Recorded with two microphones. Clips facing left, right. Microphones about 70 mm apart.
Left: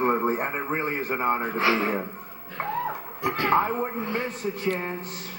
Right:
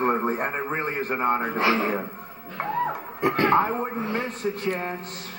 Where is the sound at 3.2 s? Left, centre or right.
Right.